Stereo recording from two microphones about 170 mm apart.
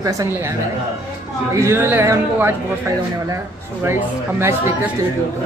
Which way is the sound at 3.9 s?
15° right (ahead or behind).